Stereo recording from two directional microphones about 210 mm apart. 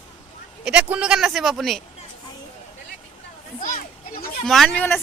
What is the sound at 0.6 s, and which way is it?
Speech, 5° right (ahead or behind).